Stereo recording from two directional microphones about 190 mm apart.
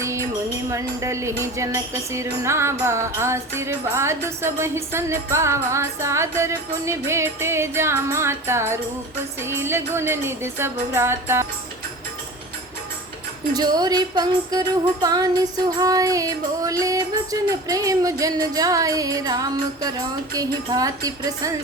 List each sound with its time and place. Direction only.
0.0 s music: 15° right (ahead or behind)
0.7 s speech: 15° right (ahead or behind)
13.5 s music: 20° right (ahead or behind)
15.0 s speech: 20° right (ahead or behind)
17.5 s music: 20° right (ahead or behind)